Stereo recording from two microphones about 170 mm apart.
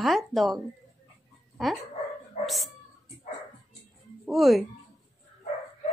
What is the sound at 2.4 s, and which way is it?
Dog, centre (ahead or behind).